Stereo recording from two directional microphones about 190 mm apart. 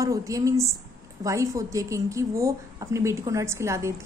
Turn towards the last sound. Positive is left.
turn(degrees=-15)  # may be behind; listen again after turning